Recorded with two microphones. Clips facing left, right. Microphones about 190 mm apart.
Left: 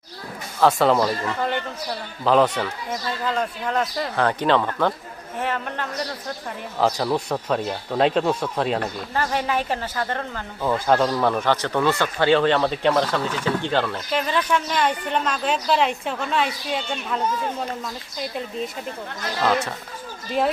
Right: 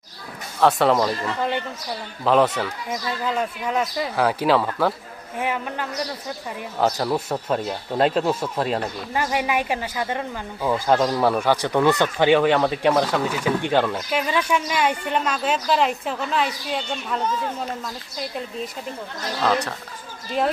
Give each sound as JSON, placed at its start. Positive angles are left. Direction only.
{"t": 0.6, "sound": "speech", "side_deg": 0}
{"t": 2.2, "sound": "speech", "side_deg": 0}
{"t": 9.1, "sound": "speech", "side_deg": -15}
{"t": 18.2, "sound": "speech", "side_deg": 0}